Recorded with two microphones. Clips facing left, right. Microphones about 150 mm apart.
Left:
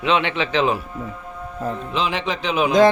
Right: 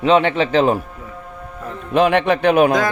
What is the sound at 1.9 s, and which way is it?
Speech, 55° right (ahead or behind).